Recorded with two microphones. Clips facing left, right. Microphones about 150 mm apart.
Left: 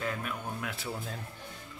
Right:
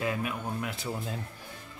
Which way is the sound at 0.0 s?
15° right (ahead or behind).